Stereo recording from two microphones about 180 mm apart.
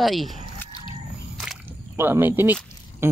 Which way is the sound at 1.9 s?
10° right (ahead or behind).